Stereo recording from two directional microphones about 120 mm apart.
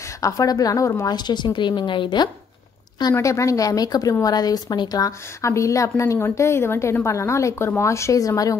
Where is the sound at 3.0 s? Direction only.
30° left (ahead or behind).